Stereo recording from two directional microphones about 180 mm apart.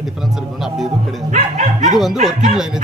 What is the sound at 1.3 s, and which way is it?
Bow-wow, 45° right (ahead or behind).